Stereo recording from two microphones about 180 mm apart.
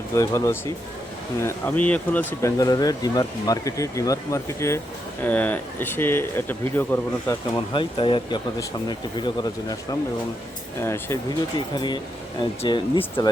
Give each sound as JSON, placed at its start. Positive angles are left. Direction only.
{"t": 0.1, "sound": "speech", "side_deg": 15}
{"t": 2.6, "sound": "speech", "side_deg": 20}
{"t": 7.5, "sound": "speech", "side_deg": 25}